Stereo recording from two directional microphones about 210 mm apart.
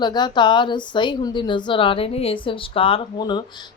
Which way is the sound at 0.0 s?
20° left (ahead or behind).